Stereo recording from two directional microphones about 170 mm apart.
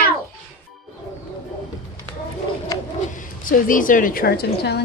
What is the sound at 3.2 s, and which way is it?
A woman's voice, 55° left (ahead or behind).